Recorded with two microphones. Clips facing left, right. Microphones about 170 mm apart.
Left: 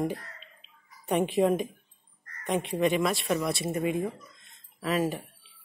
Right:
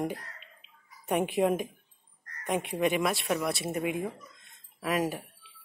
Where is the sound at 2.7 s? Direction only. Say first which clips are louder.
Left 2 dB; 10° right (ahead or behind).